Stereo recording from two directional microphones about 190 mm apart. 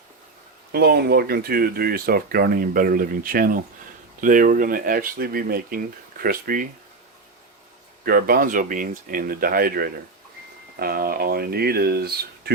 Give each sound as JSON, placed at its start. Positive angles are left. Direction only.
{"t": 0.7, "sound": "speech", "side_deg": -60}
{"t": 8.0, "sound": "speech", "side_deg": -50}